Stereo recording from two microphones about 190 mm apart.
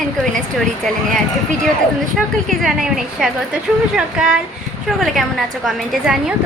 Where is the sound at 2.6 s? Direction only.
5° right (ahead or behind).